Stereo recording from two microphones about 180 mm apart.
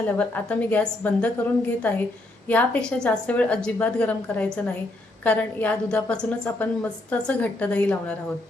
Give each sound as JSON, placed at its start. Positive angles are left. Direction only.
{"t": 0.2, "sound": "a woman's voice", "side_deg": 5}